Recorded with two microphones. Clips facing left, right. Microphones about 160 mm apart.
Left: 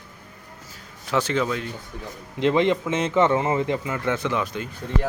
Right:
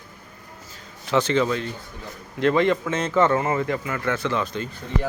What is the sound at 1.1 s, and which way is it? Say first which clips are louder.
Speech: right 3 dB; 5° left (ahead or behind).